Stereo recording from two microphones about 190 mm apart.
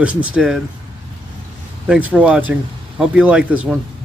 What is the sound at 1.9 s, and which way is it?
Speech, 5° right (ahead or behind).